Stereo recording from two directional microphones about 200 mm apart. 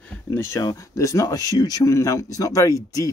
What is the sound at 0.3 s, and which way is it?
Speech, 15° left (ahead or behind).